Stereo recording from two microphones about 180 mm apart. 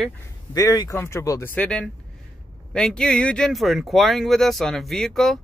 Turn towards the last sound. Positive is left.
turn(degrees=0)  # may be behind; listen again after turning